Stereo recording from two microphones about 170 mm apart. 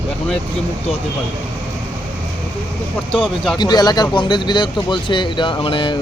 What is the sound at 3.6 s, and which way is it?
Speech, 25° left (ahead or behind).